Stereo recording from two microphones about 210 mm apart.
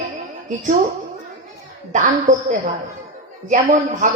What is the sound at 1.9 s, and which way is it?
A woman's voice, 35° right (ahead or behind).